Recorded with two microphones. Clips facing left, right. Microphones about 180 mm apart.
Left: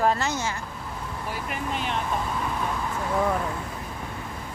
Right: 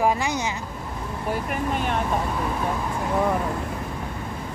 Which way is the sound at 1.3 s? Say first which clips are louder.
Right 6 dB; 50° right (ahead or behind).